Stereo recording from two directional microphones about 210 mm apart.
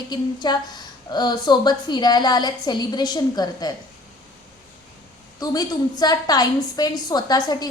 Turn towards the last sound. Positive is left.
turn(degrees=20)  # may be behind; listen again after turning